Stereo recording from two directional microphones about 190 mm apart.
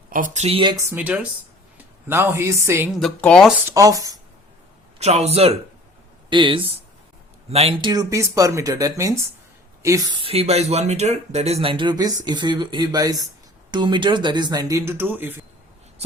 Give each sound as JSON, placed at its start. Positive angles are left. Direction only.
{"t": 0.1, "sound": "speech", "side_deg": -40}
{"t": 2.9, "sound": "speech", "side_deg": 5}
{"t": 3.7, "sound": "speech", "side_deg": -15}
{"t": 4.9, "sound": "a man's voice", "side_deg": -35}